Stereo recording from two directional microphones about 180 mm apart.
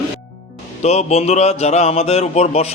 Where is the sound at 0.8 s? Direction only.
40° left (ahead or behind).